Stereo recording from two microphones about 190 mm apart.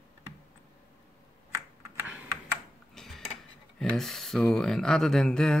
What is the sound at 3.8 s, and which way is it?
Speech, centre (ahead or behind).